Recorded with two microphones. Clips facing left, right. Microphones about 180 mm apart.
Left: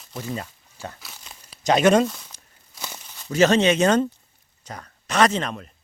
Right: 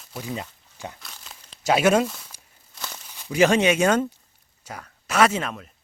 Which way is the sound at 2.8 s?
10° left (ahead or behind).